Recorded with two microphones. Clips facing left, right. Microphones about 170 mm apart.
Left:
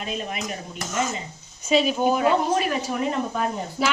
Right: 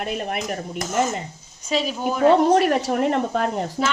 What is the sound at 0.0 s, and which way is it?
Speech, 60° right (ahead or behind).